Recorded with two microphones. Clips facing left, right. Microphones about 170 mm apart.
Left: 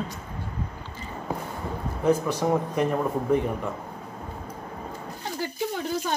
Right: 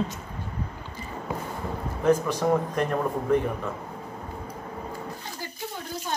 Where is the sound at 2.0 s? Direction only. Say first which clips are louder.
Right 1 dB; 10° left (ahead or behind).